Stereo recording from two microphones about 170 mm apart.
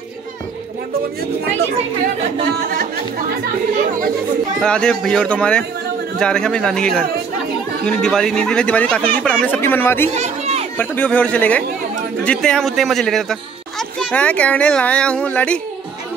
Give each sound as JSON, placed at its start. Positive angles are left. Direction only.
{"t": 4.6, "sound": "speech", "side_deg": 5}
{"t": 10.1, "sound": "chatter", "side_deg": -40}
{"t": 10.8, "sound": "speech", "side_deg": 10}